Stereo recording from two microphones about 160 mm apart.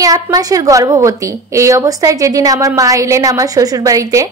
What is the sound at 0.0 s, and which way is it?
A woman's voice, 20° right (ahead or behind).